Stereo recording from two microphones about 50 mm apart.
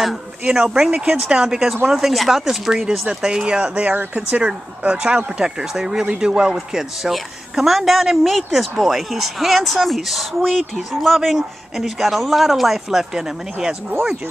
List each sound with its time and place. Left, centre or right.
0.4 s speech: centre
3.9 s speech: right
4.3 s a woman's voice: right